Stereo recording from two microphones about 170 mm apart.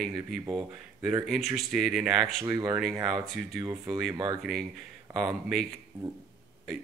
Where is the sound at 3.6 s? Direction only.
20° right (ahead or behind).